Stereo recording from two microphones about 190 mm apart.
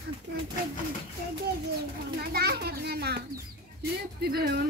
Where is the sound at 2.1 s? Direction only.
55° right (ahead or behind).